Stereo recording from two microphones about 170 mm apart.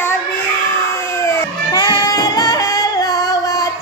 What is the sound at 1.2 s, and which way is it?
Music, 20° left (ahead or behind).